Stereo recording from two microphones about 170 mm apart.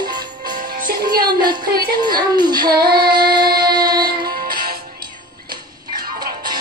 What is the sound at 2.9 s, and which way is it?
Female singing, 25° right (ahead or behind).